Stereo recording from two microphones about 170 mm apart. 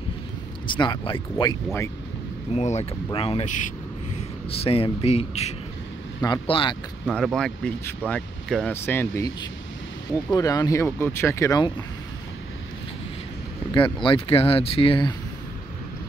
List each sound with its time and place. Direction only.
0.7 s speech: 25° left (ahead or behind)
2.5 s speech: 40° left (ahead or behind)
4.6 s speech: 35° left (ahead or behind)
7.1 s speech: centre (ahead or behind); by 11.8 s 25° left (ahead or behind)
14.0 s speech: 30° left (ahead or behind)